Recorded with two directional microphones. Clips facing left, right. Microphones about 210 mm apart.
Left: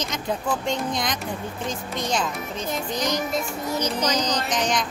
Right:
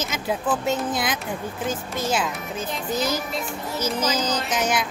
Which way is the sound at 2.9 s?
5° right (ahead or behind).